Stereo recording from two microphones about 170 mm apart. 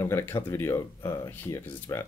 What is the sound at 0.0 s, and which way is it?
Speech, 15° left (ahead or behind).